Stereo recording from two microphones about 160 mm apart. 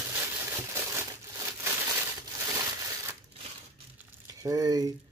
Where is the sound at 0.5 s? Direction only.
15° right (ahead or behind).